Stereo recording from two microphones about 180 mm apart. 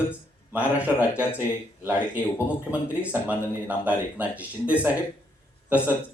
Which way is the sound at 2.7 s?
5° right (ahead or behind).